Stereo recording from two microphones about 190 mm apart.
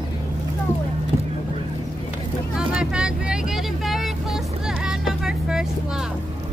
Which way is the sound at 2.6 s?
5° right (ahead or behind).